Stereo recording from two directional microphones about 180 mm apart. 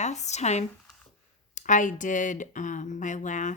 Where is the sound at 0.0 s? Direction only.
40° left (ahead or behind).